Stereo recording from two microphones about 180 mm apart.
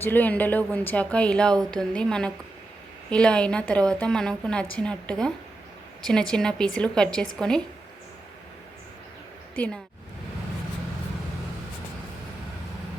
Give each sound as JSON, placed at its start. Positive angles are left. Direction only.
{"t": 0.0, "sound": "a woman's voice", "side_deg": 10}
{"t": 9.6, "sound": "speech", "side_deg": 5}